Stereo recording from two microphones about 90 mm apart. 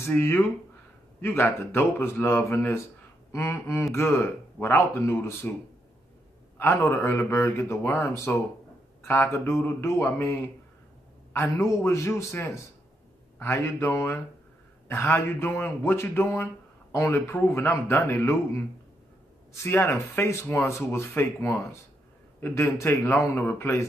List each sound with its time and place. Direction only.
0.1 s speech: 25° left (ahead or behind)
6.6 s a man's voice: 30° left (ahead or behind)